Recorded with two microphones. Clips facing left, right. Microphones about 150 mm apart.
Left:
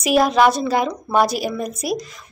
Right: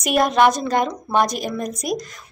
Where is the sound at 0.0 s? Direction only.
Centre (ahead or behind).